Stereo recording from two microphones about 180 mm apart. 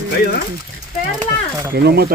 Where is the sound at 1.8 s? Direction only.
60° right (ahead or behind).